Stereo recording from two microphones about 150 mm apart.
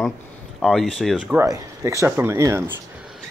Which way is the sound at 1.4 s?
20° right (ahead or behind).